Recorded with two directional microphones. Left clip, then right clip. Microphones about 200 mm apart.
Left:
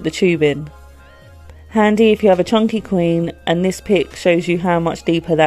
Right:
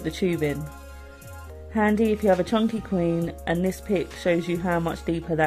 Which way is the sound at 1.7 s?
40° left (ahead or behind).